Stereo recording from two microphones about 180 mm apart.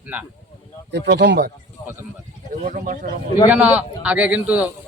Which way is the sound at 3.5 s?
10° right (ahead or behind).